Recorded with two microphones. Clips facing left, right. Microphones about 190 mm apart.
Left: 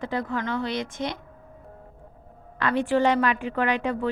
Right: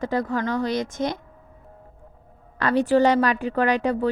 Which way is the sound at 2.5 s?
40° right (ahead or behind).